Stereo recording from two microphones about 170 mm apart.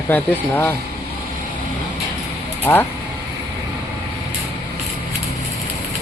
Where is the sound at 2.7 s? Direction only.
10° left (ahead or behind).